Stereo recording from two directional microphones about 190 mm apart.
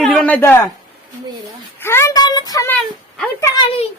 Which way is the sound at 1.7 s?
10° left (ahead or behind).